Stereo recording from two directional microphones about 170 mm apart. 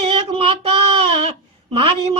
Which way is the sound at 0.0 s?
35° right (ahead or behind).